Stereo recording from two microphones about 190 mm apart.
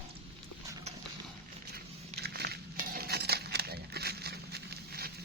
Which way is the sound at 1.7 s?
55° right (ahead or behind).